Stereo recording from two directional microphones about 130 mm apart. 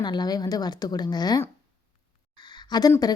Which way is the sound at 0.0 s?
35° left (ahead or behind).